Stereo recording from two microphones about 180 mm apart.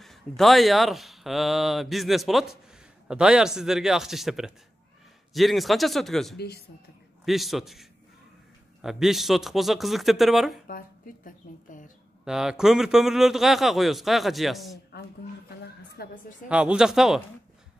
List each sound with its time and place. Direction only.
0.0 s speech: centre (ahead or behind)
6.3 s speech: 60° left (ahead or behind)
7.2 s speech: centre (ahead or behind)
8.8 s speech: centre (ahead or behind)
11.2 s a woman's voice: 45° left (ahead or behind)
12.3 s speech: 5° right (ahead or behind)
16.0 s a woman's voice: 60° left (ahead or behind)
16.4 s speech: 5° right (ahead or behind)